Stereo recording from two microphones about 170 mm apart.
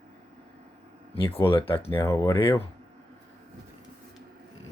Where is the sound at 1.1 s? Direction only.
30° left (ahead or behind).